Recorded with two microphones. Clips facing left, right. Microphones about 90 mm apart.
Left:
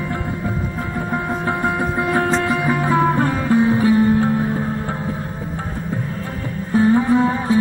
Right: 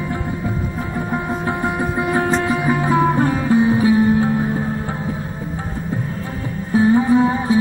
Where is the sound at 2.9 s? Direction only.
35° left (ahead or behind).